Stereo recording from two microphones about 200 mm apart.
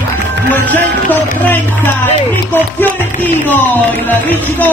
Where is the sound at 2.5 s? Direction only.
10° left (ahead or behind).